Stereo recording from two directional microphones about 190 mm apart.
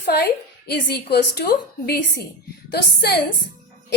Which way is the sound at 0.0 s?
60° left (ahead or behind).